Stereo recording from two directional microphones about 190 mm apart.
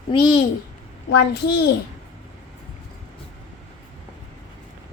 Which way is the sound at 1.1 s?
60° left (ahead or behind).